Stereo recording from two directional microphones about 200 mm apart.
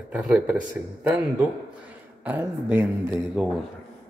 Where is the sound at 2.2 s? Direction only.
10° right (ahead or behind).